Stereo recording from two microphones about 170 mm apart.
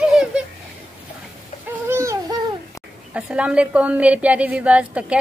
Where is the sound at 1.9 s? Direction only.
15° right (ahead or behind).